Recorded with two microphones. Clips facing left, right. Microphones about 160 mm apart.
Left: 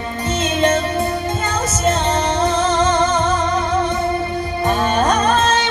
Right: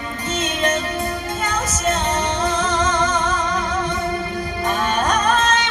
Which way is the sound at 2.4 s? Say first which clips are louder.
Left 5 dB; 30° left (ahead or behind).